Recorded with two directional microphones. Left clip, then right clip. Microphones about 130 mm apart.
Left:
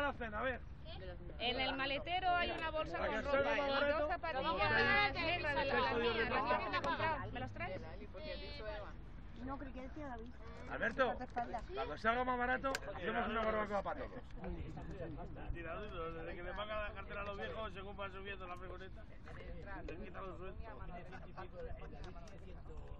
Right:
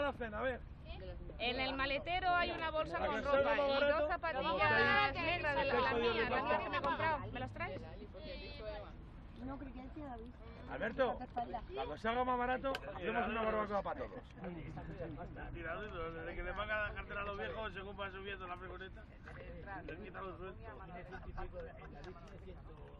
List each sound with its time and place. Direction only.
0.0 s speech: 60° right (ahead or behind)
1.4 s a man's voice: 40° right (ahead or behind)
5.0 s speech: 25° right (ahead or behind)
5.7 s a man's voice: 45° right (ahead or behind)
6.4 s speech: 30° right (ahead or behind)
7.1 s a man's voice: 45° right (ahead or behind)
7.7 s speech: 15° left (ahead or behind)
10.7 s speech: 30° right (ahead or behind)
11.1 s speech: 20° left (ahead or behind)
11.7 s speech: 25° right (ahead or behind)
12.8 s speech: 5° left (ahead or behind)
13.6 s speech: 25° right (ahead or behind)
15.3 s a man's voice: centre (ahead or behind)
19.9 s a man's voice: 15° left (ahead or behind)